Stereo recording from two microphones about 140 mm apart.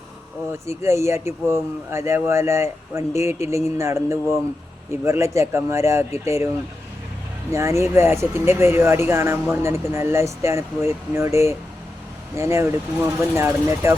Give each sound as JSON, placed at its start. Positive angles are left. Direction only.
{"t": 0.6, "sound": "speech", "side_deg": -20}
{"t": 7.5, "sound": "speech", "side_deg": -20}